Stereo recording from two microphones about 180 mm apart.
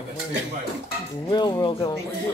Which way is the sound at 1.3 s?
25° left (ahead or behind).